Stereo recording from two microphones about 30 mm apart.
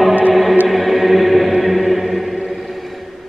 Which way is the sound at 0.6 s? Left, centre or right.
Centre.